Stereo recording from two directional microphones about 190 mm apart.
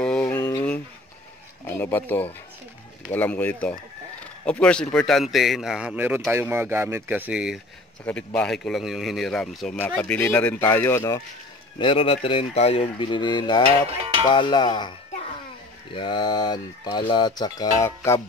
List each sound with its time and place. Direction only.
0.0 s a sound: 5° left (ahead or behind)
1.8 s speech: 10° left (ahead or behind); by 7.6 s 5° right (ahead or behind)
8.0 s speech: 5° left (ahead or behind)
11.8 s speech: 30° left (ahead or behind)
13.8 s music: 30° right (ahead or behind)
14.3 s speech: 25° left (ahead or behind)
15.9 s speech: 25° left (ahead or behind)